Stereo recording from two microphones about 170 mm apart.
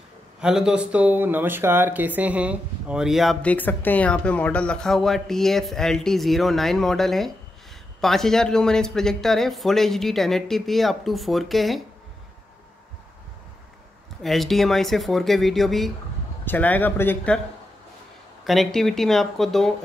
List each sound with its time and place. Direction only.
0.4 s speech: 5° right (ahead or behind)
14.2 s speech: centre (ahead or behind)
18.4 s speech: centre (ahead or behind)